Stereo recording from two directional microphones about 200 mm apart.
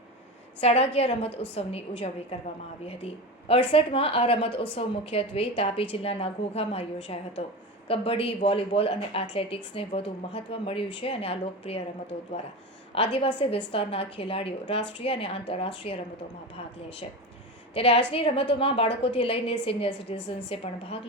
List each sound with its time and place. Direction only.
0.6 s a woman's voice: 30° left (ahead or behind)
3.5 s a woman's voice: 30° left (ahead or behind)
12.9 s a woman's voice: 30° left (ahead or behind)
17.7 s a woman's voice: 30° left (ahead or behind)